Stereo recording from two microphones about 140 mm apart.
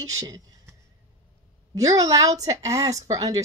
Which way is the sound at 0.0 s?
25° right (ahead or behind).